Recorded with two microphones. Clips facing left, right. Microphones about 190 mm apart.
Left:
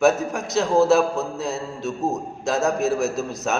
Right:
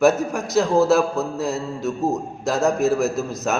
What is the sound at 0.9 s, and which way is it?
A man's voice, centre (ahead or behind).